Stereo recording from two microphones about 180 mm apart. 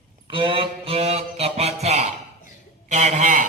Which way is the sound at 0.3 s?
30° right (ahead or behind).